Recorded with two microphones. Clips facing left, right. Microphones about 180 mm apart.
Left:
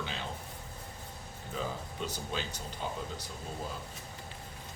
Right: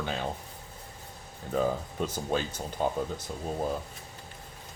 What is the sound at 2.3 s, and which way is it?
Speech, 50° right (ahead or behind).